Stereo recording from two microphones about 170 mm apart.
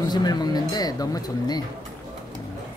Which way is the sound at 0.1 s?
25° left (ahead or behind).